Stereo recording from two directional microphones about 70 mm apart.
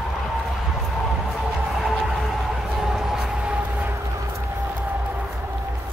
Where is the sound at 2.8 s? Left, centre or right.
Centre.